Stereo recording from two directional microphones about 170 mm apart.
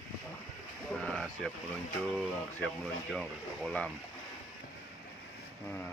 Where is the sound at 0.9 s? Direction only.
5° left (ahead or behind).